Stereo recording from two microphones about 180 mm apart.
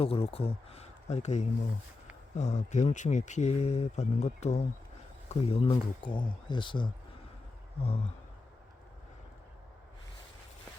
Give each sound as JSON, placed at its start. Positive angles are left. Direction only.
{"t": 0.0, "sound": "speech", "side_deg": 30}